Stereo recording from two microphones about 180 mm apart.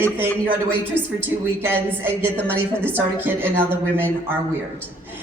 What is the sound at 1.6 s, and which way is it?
A woman's voice, 10° right (ahead or behind).